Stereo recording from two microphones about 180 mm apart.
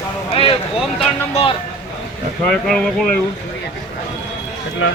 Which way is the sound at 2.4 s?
Centre (ahead or behind).